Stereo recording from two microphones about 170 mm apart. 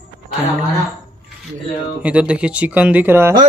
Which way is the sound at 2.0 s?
5° right (ahead or behind).